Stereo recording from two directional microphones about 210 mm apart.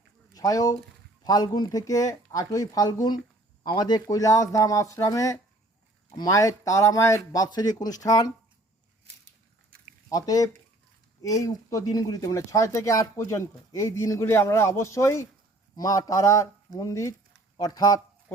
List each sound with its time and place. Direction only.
0.3 s speech: 15° left (ahead or behind)
10.1 s speech: 15° left (ahead or behind)